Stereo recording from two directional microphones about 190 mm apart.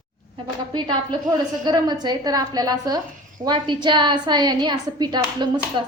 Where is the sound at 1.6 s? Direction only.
20° right (ahead or behind).